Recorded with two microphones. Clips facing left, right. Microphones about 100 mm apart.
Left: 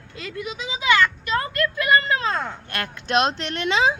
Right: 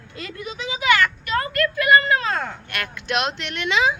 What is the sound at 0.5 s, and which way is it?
Speech, 20° left (ahead or behind).